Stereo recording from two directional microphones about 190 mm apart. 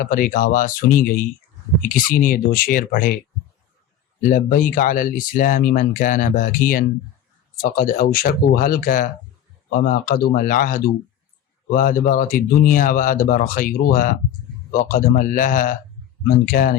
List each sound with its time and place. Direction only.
0.0 s speech: 45° left (ahead or behind)
4.2 s speech: 45° left (ahead or behind)